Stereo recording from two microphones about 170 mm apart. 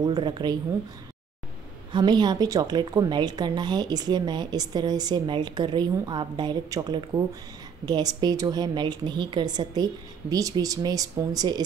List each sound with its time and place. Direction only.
0.0 s speech: 25° right (ahead or behind)
1.9 s speech: 25° right (ahead or behind)